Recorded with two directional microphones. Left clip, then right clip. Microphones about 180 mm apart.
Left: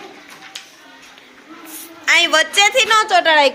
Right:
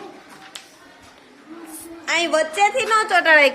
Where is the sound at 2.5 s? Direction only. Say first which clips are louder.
Left 4 dB; 15° left (ahead or behind).